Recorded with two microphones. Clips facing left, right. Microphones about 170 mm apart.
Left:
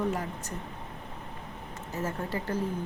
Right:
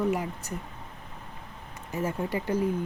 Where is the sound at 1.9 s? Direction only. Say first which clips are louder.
Right 3 dB; 15° right (ahead or behind).